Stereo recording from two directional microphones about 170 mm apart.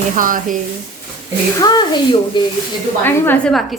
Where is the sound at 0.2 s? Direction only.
55° right (ahead or behind).